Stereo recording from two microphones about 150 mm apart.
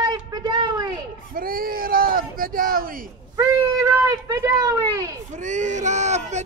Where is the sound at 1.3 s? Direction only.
75° right (ahead or behind).